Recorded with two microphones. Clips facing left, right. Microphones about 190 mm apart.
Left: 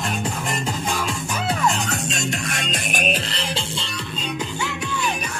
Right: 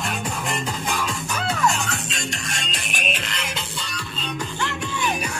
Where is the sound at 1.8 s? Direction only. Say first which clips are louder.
Left 4 dB; 45° left (ahead or behind); by 3.9 s 30° left (ahead or behind).